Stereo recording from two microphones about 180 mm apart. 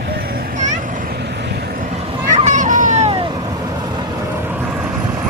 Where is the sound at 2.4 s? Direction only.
45° right (ahead or behind).